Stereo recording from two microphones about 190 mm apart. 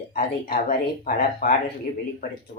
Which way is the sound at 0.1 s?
50° left (ahead or behind).